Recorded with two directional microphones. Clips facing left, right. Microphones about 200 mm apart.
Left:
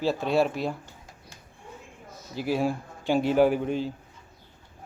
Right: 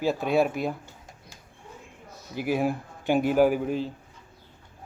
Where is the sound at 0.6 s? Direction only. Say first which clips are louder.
Right 1 dB; 50° right (ahead or behind).